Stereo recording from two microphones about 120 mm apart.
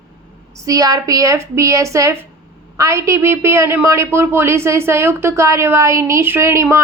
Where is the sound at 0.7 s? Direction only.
30° right (ahead or behind).